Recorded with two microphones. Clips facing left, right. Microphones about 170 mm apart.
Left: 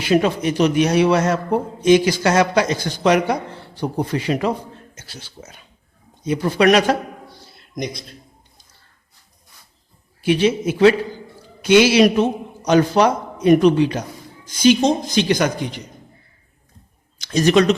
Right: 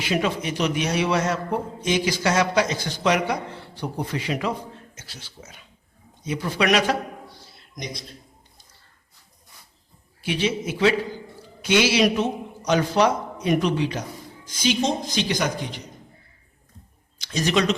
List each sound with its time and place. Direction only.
0.0 s a man's voice: 40° left (ahead or behind)
10.2 s a man's voice: 50° left (ahead or behind)
17.2 s speech: 50° left (ahead or behind)